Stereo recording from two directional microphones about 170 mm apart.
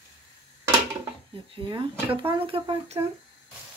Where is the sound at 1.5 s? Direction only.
30° right (ahead or behind).